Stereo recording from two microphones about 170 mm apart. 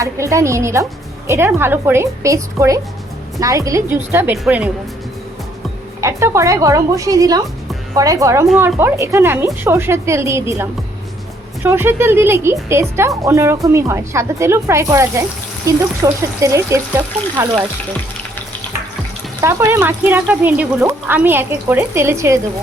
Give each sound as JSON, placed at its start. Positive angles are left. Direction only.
{"t": 0.0, "sound": "speech", "side_deg": -20}
{"t": 6.0, "sound": "speech", "side_deg": -15}
{"t": 19.4, "sound": "speech", "side_deg": -15}